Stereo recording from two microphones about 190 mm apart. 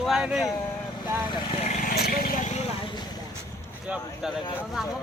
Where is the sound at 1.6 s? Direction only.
40° left (ahead or behind).